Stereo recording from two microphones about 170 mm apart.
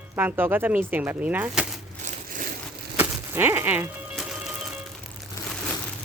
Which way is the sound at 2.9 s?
15° right (ahead or behind).